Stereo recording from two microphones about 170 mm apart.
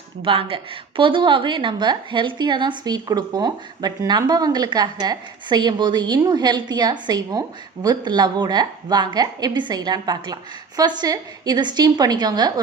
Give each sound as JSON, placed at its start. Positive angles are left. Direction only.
{"t": 0.2, "sound": "a woman's voice", "side_deg": -35}